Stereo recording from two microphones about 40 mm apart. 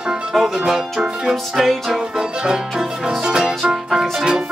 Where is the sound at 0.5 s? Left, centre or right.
Centre.